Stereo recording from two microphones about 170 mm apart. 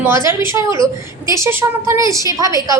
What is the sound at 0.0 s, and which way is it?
A woman's voice, 15° right (ahead or behind).